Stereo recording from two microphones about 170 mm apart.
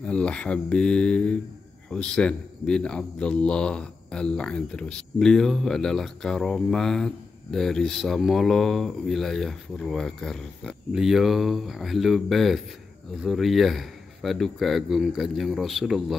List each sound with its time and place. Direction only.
0.0 s a man's voice: 5° left (ahead or behind)